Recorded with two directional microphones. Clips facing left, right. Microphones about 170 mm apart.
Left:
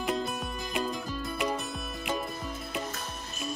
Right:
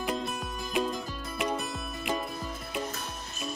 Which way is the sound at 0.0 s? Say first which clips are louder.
Left 1 dB; centre (ahead or behind).